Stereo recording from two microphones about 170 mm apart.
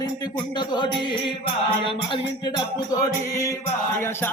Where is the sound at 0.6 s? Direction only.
25° left (ahead or behind).